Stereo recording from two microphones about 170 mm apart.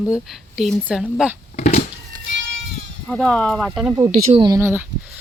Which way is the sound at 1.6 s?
45° left (ahead or behind).